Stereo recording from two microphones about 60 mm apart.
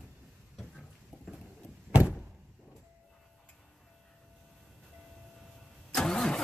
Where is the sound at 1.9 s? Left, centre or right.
Right.